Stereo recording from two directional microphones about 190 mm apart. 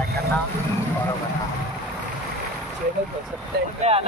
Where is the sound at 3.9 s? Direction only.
35° right (ahead or behind).